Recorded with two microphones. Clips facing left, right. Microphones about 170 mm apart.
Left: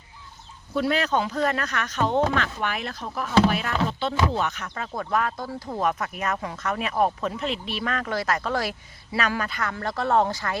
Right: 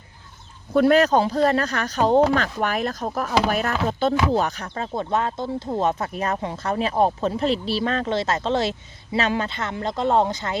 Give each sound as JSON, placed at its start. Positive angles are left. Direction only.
{"t": 0.7, "sound": "speech", "side_deg": -50}
{"t": 4.7, "sound": "speech", "side_deg": -25}